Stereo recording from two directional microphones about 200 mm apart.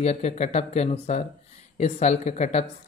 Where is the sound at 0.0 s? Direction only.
35° left (ahead or behind).